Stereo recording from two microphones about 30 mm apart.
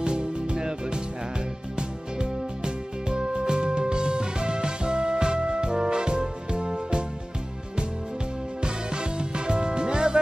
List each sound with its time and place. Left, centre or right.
0.0 s music: right
8.6 s music: right